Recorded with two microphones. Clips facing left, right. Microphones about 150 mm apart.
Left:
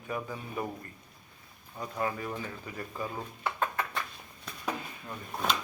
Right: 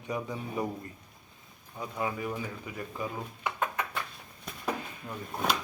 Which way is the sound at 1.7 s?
5° right (ahead or behind).